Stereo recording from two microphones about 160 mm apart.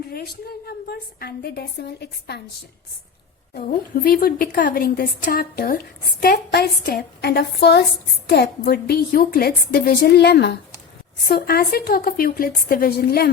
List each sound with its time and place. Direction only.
0.1 s a woman's voice: 75° left (ahead or behind); by 2.4 s 90° left
4.0 s speech: 65° left (ahead or behind); by 7.9 s 90° left
8.3 s a woman's voice: 80° left
11.3 s speech: 70° left (ahead or behind)